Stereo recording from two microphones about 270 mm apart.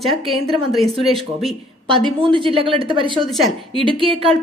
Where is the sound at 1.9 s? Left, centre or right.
Centre.